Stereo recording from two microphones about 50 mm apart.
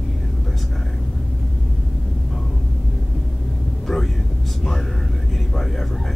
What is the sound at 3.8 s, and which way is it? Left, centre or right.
Vehicle, centre.